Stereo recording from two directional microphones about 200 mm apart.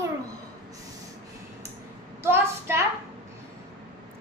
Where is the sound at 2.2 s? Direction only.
10° right (ahead or behind).